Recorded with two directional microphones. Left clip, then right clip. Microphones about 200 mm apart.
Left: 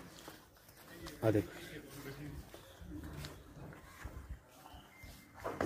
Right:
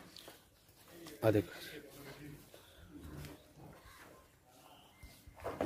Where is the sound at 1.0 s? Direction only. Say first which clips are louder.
Right 2 dB; 15° right (ahead or behind).